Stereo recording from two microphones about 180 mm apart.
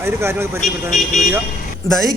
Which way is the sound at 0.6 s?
40° left (ahead or behind).